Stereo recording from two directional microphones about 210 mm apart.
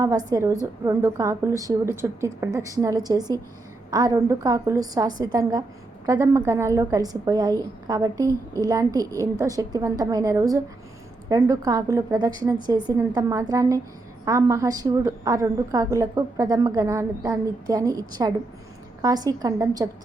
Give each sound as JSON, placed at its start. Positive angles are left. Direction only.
{"t": 0.3, "sound": "a woman's voice", "side_deg": -15}